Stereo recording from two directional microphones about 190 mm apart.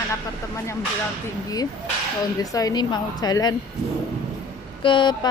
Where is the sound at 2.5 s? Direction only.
20° left (ahead or behind).